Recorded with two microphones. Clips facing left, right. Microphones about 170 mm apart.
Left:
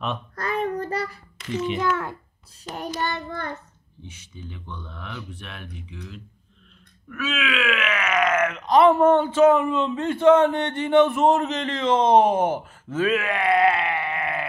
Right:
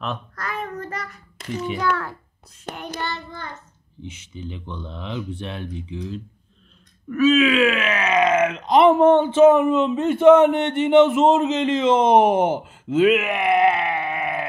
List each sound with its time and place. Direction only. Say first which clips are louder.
0.4 s child singing: left 9 dB; 30° left (ahead or behind)
2.7 s child singing: even; 55° right (ahead or behind)
3.0 s child singing: left 2 dB; 55° left (ahead or behind)
4.0 s speech: right 7 dB; 20° right (ahead or behind)